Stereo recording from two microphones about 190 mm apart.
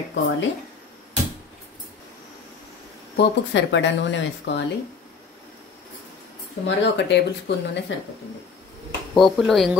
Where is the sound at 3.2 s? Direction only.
70° left (ahead or behind).